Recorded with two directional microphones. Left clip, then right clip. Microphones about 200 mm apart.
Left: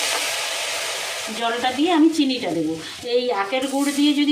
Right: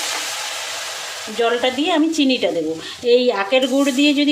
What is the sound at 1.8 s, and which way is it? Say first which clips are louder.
Speech: left 3 dB; 50° right (ahead or behind).